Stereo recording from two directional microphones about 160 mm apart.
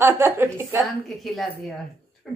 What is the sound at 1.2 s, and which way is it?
Speech, centre (ahead or behind).